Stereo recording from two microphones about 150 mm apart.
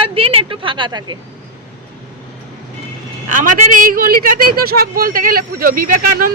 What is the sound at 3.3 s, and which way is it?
A woman's voice, 60° right (ahead or behind).